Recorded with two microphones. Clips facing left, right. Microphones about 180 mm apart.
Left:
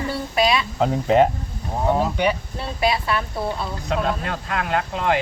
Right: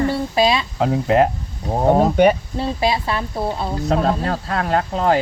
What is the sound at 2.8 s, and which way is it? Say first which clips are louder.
Speech: left 1 dB; 25° right (ahead or behind).